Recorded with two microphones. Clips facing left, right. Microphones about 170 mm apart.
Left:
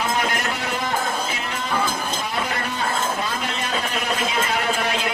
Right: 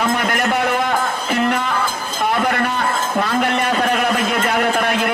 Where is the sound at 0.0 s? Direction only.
55° right (ahead or behind).